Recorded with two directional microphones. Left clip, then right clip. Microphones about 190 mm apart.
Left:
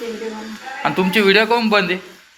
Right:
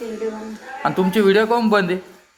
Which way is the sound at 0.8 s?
15° right (ahead or behind).